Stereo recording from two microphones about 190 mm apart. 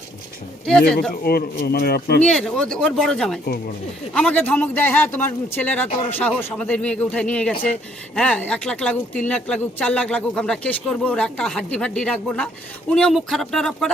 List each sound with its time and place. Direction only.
0.6 s speech: 5° left (ahead or behind)
1.1 s speech: 55° left (ahead or behind)
2.2 s speech: 5° left (ahead or behind)